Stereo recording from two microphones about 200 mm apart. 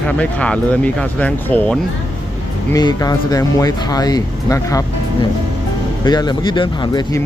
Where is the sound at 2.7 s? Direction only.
20° left (ahead or behind).